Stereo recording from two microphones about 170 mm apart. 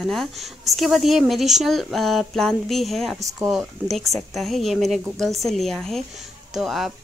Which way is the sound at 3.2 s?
20° right (ahead or behind).